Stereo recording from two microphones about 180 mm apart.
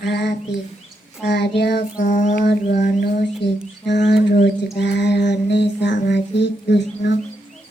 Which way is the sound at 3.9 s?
75° left (ahead or behind).